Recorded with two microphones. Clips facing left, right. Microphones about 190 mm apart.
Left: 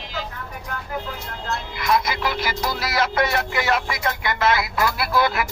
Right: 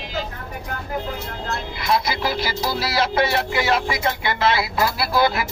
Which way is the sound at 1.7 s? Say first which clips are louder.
Even; 30° right (ahead or behind).